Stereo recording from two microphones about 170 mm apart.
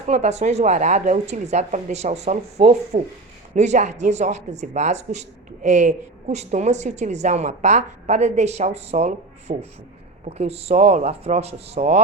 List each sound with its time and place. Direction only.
0.1 s a woman's voice: 40° right (ahead or behind)